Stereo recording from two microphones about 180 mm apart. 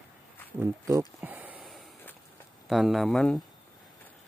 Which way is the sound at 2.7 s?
Centre (ahead or behind).